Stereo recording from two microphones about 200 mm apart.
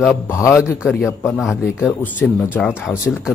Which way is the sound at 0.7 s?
5° right (ahead or behind).